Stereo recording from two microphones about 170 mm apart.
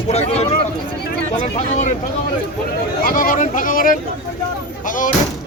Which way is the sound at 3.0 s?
55° left (ahead or behind).